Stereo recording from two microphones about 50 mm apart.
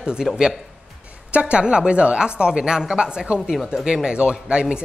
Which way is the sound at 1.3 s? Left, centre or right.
Right.